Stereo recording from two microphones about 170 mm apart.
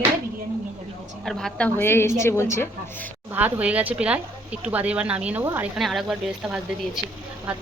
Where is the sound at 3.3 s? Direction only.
10° right (ahead or behind).